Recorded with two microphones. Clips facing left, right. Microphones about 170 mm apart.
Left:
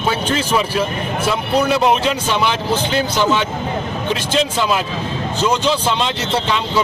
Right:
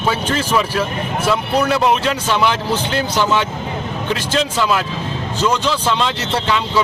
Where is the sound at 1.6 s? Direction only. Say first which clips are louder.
Left 1 dB; 15° left (ahead or behind).